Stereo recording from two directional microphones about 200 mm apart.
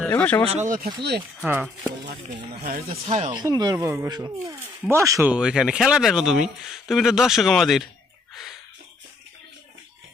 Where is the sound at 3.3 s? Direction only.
20° right (ahead or behind).